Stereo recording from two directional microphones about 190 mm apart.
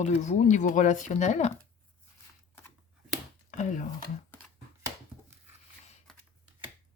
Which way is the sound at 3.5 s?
40° left (ahead or behind).